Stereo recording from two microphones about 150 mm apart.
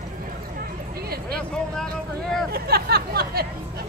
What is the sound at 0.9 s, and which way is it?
Speech, 90° right.